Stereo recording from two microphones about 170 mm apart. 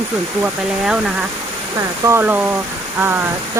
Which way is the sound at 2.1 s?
10° right (ahead or behind).